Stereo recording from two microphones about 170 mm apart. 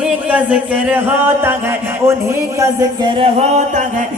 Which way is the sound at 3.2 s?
35° right (ahead or behind).